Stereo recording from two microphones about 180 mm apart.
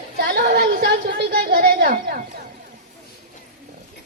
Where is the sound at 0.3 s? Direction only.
60° right (ahead or behind).